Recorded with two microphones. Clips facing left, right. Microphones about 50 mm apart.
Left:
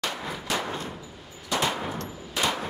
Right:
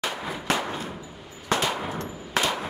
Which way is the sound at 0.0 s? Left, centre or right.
Centre.